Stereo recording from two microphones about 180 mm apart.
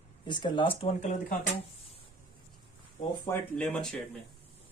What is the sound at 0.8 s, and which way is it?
Speech, 40° left (ahead or behind).